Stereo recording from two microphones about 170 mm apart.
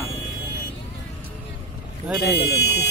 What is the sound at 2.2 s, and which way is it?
Speech, 75° left (ahead or behind).